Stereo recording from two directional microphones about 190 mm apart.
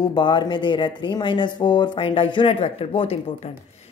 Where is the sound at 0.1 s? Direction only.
25° left (ahead or behind).